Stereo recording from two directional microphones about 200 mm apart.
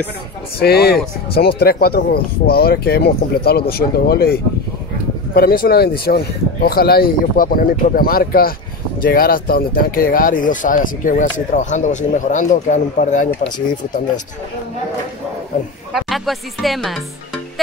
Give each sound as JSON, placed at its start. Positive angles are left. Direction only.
{"t": 0.6, "sound": "speech", "side_deg": 50}
{"t": 15.9, "sound": "speech", "side_deg": 0}